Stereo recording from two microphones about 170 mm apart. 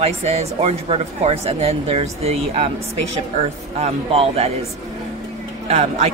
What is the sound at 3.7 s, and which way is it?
Speech, 35° right (ahead or behind).